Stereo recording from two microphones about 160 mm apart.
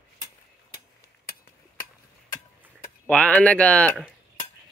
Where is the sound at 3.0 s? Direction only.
5° left (ahead or behind).